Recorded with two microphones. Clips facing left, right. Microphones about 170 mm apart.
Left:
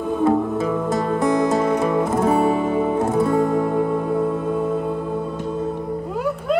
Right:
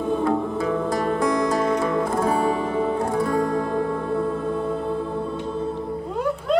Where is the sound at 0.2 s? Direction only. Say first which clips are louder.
Left 4 dB; 20° left (ahead or behind).